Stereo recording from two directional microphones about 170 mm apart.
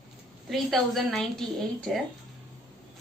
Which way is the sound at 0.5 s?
Centre (ahead or behind).